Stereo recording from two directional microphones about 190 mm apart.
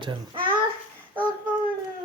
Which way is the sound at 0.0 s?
25° right (ahead or behind).